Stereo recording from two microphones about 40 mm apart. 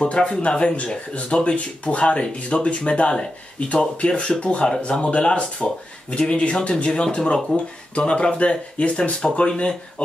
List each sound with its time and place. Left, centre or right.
0.0 s speech: left
3.5 s speech: left
5.6 s speech: centre
6.1 s speech: left